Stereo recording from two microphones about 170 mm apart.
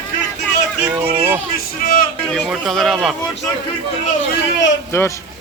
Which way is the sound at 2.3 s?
Centre (ahead or behind).